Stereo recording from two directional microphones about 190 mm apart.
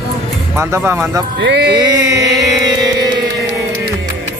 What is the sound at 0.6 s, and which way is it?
Speech, 15° right (ahead or behind).